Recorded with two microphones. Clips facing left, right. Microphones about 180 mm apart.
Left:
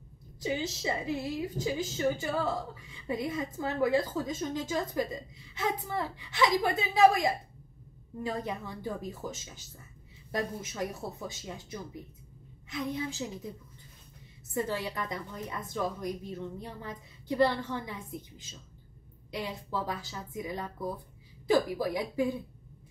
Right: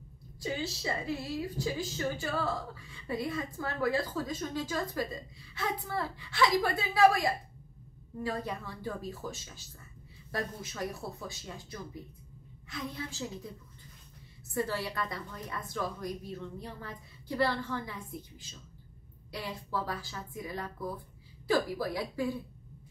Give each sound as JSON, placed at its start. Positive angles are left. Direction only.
{"t": 0.4, "sound": "a woman's voice", "side_deg": 20}
{"t": 14.5, "sound": "a woman's voice", "side_deg": 20}
{"t": 19.3, "sound": "a woman's voice", "side_deg": 20}